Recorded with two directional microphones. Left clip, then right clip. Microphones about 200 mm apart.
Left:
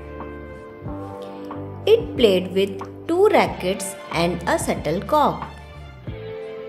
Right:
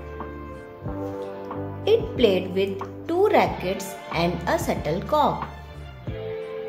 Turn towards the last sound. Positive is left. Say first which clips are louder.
# left 3 dB
turn(degrees=25)  # may be behind; listen again after turning